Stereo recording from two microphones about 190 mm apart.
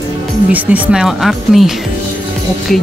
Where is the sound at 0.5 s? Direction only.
10° right (ahead or behind).